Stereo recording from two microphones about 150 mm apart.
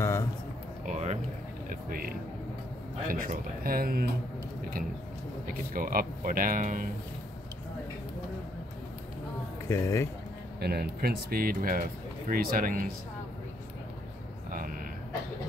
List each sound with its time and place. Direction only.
0.0 s music: 20° left (ahead or behind)
0.8 s a sound: 50° right (ahead or behind)
1.7 s speech: 75° right (ahead or behind)
5.5 s speech: 70° right (ahead or behind)
9.7 s speech: 20° left (ahead or behind)
10.6 s speech: 90° right; by 12.8 s 70° right (ahead or behind)